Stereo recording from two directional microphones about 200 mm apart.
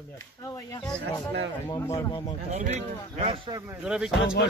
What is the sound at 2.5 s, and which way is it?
Speech, 35° right (ahead or behind).